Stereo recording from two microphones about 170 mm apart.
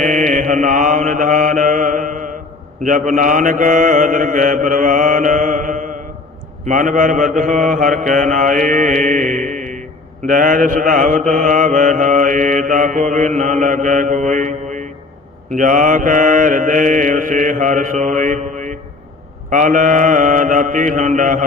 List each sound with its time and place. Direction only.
0.0 s mantra: 50° right (ahead or behind)
15.5 s mantra: 50° right (ahead or behind)